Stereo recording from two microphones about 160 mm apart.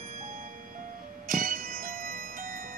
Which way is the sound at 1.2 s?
60° right (ahead or behind).